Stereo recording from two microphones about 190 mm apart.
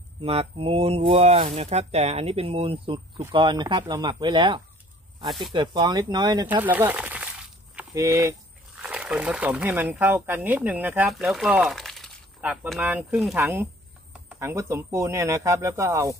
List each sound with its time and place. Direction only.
0.2 s speech: 30° right (ahead or behind)
6.4 s a sound: 10° right (ahead or behind)
8.0 s speech: 15° right (ahead or behind)
8.7 s speech: 5° right (ahead or behind)
13.4 s speech: 10° right (ahead or behind)